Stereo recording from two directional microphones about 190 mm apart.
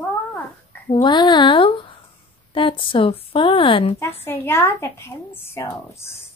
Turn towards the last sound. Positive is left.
turn(degrees=15)  # may be behind; listen again after turning